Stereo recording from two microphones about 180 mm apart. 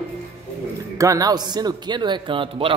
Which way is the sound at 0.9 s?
20° right (ahead or behind).